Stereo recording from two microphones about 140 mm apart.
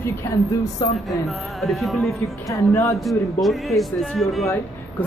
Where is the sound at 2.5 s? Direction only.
25° left (ahead or behind).